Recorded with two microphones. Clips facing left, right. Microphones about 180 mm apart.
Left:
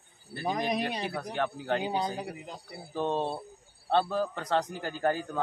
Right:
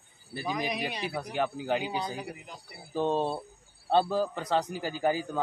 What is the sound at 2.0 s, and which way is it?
Speech, 25° left (ahead or behind).